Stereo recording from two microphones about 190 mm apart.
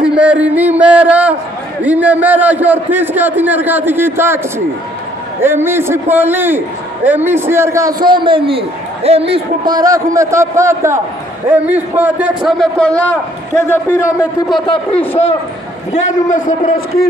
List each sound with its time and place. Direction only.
0.0 s a man's voice: 5° right (ahead or behind)
5.4 s a man's voice: 10° right (ahead or behind); by 13.2 s 10° left (ahead or behind)
14.7 s a man's voice: 30° left (ahead or behind)
15.9 s a man's voice: 40° left (ahead or behind)